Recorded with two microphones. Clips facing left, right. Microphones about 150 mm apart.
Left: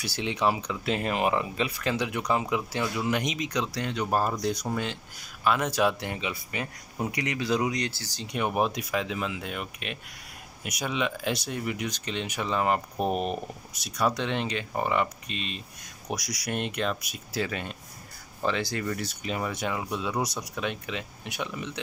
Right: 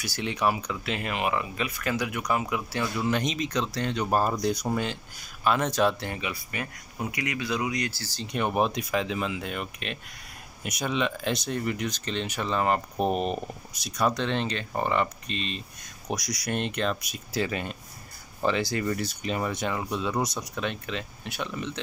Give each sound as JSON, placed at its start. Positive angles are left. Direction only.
{"t": 0.0, "sound": "speech", "side_deg": 25}
{"t": 7.1, "sound": "speech", "side_deg": 35}
{"t": 8.0, "sound": "speech", "side_deg": 15}
{"t": 14.1, "sound": "speech", "side_deg": 15}
{"t": 17.5, "sound": "speech", "side_deg": -5}